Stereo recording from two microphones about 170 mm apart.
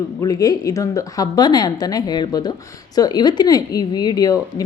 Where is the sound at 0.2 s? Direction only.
20° left (ahead or behind).